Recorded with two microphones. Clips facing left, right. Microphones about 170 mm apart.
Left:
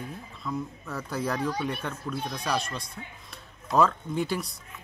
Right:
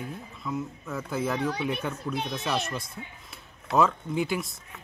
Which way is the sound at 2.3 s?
25° right (ahead or behind).